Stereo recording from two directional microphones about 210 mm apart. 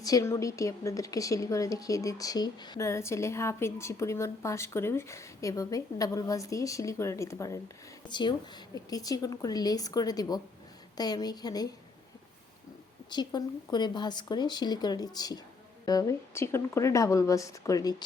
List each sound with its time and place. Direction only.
0.0 s speech: 15° left (ahead or behind)
13.1 s speech: 20° left (ahead or behind)